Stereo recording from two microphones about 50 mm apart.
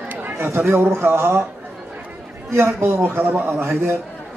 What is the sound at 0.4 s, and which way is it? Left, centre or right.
Speech, right.